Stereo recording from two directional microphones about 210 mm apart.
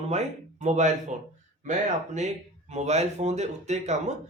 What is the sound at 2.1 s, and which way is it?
Speech, 35° right (ahead or behind).